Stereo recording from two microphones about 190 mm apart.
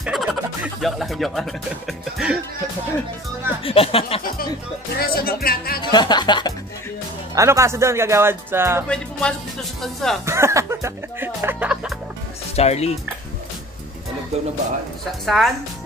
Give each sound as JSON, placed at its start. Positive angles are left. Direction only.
{"t": 0.0, "sound": "music", "side_deg": 0}
{"t": 3.6, "sound": "speech", "side_deg": 30}
{"t": 4.9, "sound": "speech", "side_deg": 55}
{"t": 5.8, "sound": "speech", "side_deg": 25}
{"t": 7.3, "sound": "speech", "side_deg": -15}
{"t": 8.8, "sound": "speech", "side_deg": 5}
{"t": 10.2, "sound": "music", "side_deg": -15}
{"t": 12.5, "sound": "speech", "side_deg": 35}
{"t": 15.2, "sound": "speech", "side_deg": 0}